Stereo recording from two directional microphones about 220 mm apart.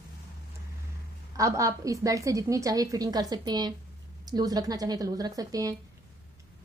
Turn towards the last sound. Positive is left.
turn(degrees=-15)  # may be behind; listen again after turning